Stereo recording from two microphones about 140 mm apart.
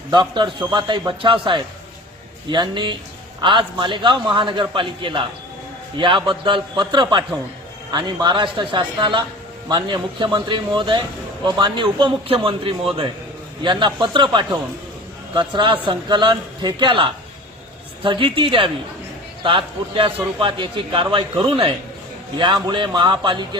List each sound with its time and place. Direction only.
0.1 s a man's voice: 30° right (ahead or behind)